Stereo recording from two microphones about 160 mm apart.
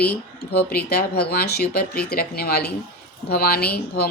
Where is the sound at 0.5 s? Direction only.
75° left (ahead or behind).